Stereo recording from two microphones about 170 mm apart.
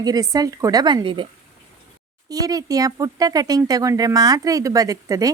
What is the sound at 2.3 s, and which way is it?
Speech, 20° right (ahead or behind).